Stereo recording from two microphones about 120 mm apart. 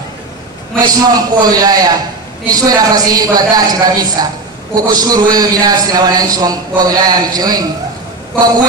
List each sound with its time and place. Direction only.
0.7 s a man's voice: 35° right (ahead or behind)